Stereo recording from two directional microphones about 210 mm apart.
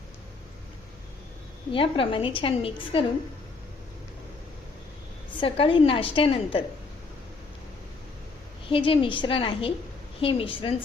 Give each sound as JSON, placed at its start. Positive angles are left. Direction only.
{"t": 1.7, "sound": "a woman's voice", "side_deg": 25}
{"t": 5.3, "sound": "a woman's voice", "side_deg": 25}
{"t": 8.7, "sound": "a woman's voice", "side_deg": 25}